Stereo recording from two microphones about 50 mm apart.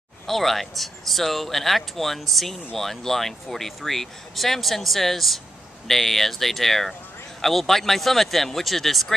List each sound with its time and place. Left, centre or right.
0.3 s speech: centre